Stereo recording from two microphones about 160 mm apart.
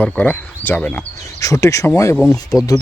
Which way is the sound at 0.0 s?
10° left (ahead or behind).